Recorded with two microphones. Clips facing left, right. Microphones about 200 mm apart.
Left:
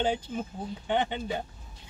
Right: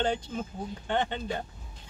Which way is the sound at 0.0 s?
10° left (ahead or behind).